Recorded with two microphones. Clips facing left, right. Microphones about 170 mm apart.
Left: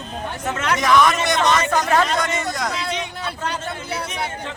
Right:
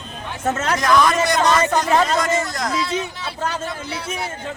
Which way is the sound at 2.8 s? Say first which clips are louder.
Right 2 dB; 50° left (ahead or behind).